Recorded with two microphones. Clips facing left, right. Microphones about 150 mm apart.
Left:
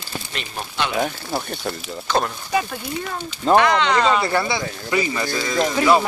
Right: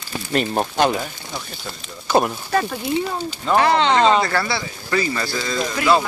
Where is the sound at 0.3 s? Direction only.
45° right (ahead or behind).